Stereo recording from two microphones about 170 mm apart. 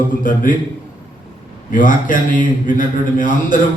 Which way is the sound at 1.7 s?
50° left (ahead or behind).